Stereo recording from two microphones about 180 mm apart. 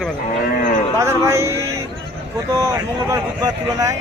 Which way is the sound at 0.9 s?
15° right (ahead or behind).